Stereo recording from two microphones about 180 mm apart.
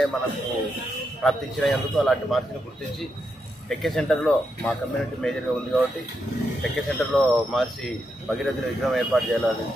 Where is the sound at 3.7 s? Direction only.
5° left (ahead or behind).